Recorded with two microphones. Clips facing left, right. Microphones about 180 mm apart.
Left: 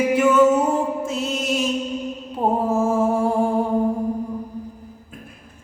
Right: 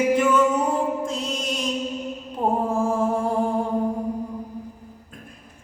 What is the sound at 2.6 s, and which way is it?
Mantra, 5° left (ahead or behind).